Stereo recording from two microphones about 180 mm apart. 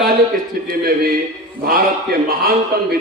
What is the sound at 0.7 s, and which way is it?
Speech, 55° right (ahead or behind).